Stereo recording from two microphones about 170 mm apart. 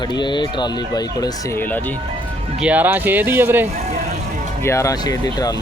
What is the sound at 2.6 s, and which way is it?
Speech, 10° right (ahead or behind).